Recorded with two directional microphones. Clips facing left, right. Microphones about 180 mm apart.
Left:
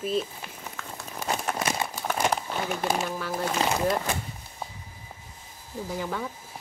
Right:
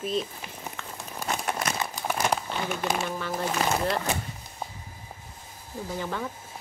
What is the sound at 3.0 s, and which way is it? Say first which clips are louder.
Speech: even; 5° left (ahead or behind).